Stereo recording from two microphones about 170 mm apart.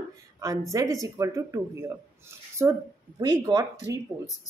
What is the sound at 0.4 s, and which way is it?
Speech, 20° right (ahead or behind).